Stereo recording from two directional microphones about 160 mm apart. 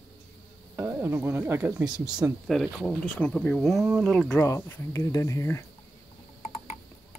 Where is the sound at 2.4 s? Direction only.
Centre (ahead or behind).